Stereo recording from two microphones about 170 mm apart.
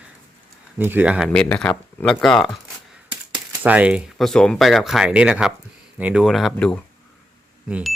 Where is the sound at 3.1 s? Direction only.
10° right (ahead or behind).